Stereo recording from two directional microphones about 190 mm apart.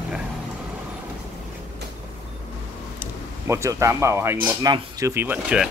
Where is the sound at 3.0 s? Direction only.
15° right (ahead or behind).